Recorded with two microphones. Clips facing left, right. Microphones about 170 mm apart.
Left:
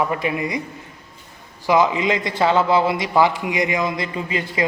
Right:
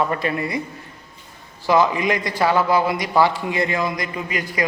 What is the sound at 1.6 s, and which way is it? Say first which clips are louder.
A man's voice: even; 15° left (ahead or behind).